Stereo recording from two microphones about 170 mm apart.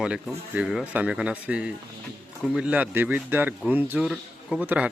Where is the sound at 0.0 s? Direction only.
5° right (ahead or behind).